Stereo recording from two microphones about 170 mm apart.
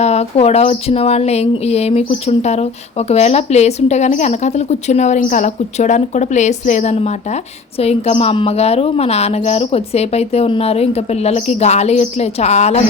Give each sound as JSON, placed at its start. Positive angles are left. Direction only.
{"t": 0.0, "sound": "speech", "side_deg": 40}